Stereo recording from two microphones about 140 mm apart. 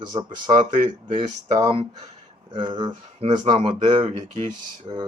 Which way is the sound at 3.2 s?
50° right (ahead or behind).